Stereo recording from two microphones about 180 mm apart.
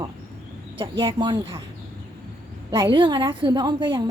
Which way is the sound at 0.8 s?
25° right (ahead or behind).